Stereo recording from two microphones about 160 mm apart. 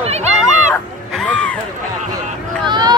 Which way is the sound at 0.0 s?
45° right (ahead or behind).